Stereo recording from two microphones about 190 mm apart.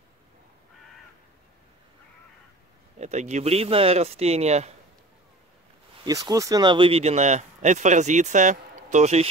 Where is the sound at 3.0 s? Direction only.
40° right (ahead or behind).